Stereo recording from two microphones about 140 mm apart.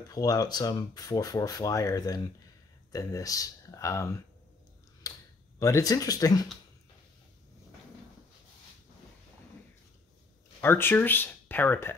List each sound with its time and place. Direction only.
0.1 s speech: 25° left (ahead or behind)
10.6 s speech: 15° left (ahead or behind)